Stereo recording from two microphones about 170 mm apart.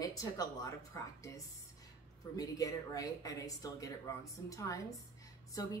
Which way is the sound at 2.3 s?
20° left (ahead or behind).